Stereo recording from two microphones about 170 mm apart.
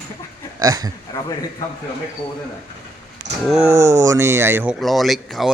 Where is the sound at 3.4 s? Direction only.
5° right (ahead or behind).